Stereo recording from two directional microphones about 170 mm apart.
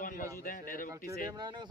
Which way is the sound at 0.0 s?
55° left (ahead or behind).